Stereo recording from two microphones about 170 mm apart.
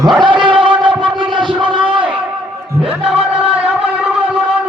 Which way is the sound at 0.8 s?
30° right (ahead or behind).